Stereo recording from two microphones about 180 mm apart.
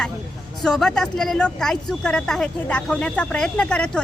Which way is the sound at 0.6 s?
5° left (ahead or behind).